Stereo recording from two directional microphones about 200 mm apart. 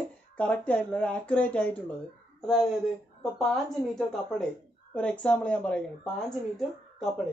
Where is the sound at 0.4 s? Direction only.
5° left (ahead or behind).